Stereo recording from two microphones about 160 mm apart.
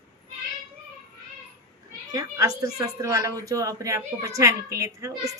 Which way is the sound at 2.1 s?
20° right (ahead or behind).